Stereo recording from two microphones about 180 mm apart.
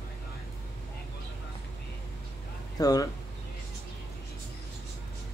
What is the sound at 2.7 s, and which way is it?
Speech, 20° left (ahead or behind).